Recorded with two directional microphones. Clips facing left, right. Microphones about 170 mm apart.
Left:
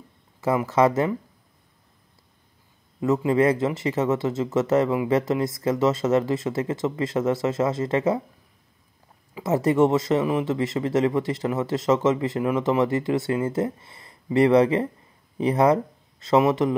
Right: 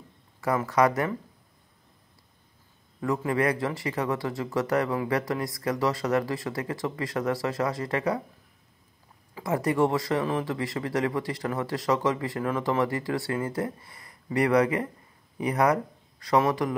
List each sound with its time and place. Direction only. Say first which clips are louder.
0.4 s speech: left 3 dB; 25° left (ahead or behind)
3.0 s speech: left 6 dB; 20° left (ahead or behind)
9.3 s speech: left 5 dB; 25° left (ahead or behind)